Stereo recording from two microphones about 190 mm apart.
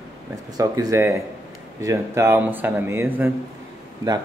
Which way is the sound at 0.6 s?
15° right (ahead or behind).